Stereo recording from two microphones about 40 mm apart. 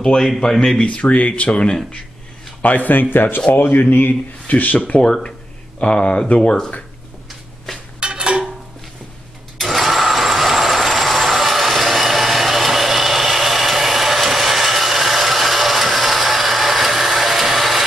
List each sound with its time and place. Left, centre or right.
0.2 s speech: centre
0.7 s speech: left
2.6 s a man's voice: left
2.9 s speech: left
3.3 s speech: left
5.8 s speech: left
8.0 s dishes: right
9.6 s a sound: centre